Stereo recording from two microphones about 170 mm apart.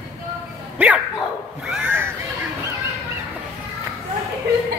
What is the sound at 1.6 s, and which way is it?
Cat, 5° right (ahead or behind).